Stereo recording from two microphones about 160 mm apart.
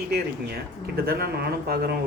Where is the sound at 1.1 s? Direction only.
80° right.